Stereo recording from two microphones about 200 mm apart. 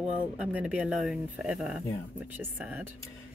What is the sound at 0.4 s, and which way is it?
Speech, 5° right (ahead or behind).